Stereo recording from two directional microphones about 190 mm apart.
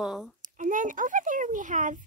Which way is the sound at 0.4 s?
45° right (ahead or behind).